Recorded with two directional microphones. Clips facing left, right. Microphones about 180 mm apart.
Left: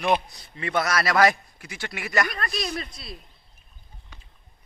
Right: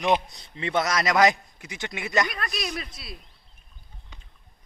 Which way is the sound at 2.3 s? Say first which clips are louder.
Left 2 dB; centre (ahead or behind).